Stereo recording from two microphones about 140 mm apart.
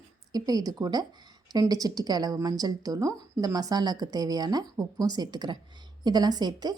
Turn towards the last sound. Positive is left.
turn(degrees=-30)  # may be behind; listen again after turning